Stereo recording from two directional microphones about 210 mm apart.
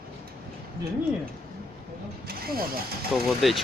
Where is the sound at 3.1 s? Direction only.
Centre (ahead or behind).